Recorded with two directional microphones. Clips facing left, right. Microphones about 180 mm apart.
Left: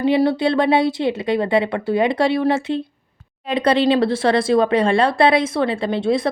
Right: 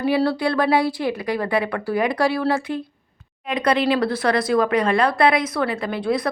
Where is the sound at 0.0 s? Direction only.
20° left (ahead or behind).